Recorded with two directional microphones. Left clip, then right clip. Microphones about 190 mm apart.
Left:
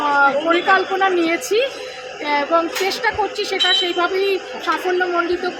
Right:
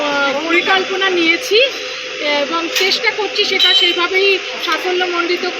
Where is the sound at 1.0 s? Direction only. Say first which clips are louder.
Right 3 dB; 15° left (ahead or behind).